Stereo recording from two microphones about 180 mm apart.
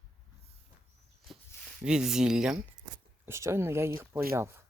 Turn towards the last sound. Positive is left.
turn(degrees=-15)  # may be behind; listen again after turning